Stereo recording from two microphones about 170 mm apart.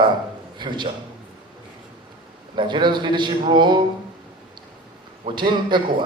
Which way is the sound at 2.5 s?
25° right (ahead or behind).